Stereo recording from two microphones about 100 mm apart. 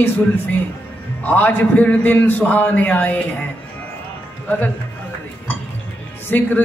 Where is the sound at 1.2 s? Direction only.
15° left (ahead or behind).